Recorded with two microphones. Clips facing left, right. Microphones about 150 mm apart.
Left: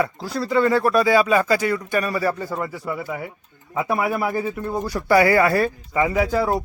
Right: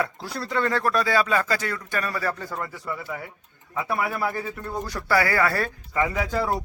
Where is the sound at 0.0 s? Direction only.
Centre (ahead or behind).